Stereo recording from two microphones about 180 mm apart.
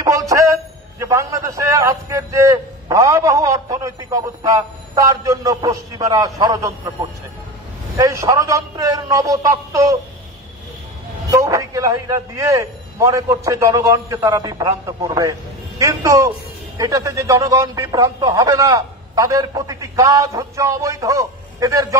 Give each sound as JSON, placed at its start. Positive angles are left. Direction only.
{"t": 0.9, "sound": "a man's voice", "side_deg": -15}
{"t": 11.2, "sound": "a man's voice", "side_deg": -15}